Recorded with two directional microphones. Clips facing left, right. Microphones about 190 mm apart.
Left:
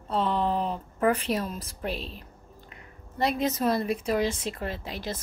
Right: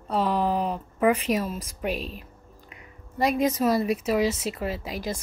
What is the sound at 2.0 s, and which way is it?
Speech, 30° left (ahead or behind).